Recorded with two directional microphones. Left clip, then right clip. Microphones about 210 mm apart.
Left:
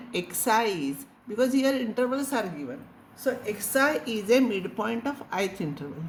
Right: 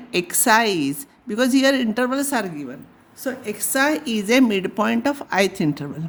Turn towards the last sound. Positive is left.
turn(degrees=-55)  # may be behind; listen again after turning